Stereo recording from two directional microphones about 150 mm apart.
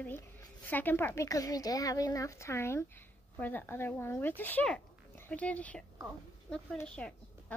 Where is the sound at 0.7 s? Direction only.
10° left (ahead or behind).